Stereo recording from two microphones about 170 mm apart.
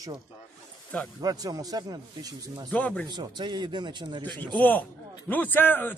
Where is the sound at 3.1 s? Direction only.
25° right (ahead or behind).